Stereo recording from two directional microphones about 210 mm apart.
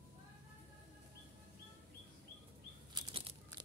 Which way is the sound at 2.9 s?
25° right (ahead or behind).